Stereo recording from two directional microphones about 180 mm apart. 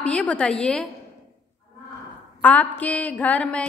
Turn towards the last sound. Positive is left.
turn(degrees=5)  # may be behind; listen again after turning